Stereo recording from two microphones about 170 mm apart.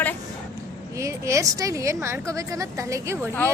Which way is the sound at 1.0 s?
15° right (ahead or behind).